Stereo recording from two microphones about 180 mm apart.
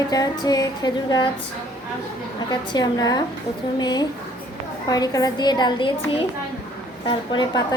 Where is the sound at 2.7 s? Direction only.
20° left (ahead or behind).